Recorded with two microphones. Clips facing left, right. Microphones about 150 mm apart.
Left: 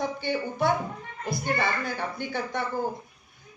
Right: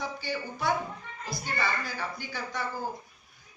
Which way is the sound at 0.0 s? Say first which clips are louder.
Left 6 dB; 55° left (ahead or behind).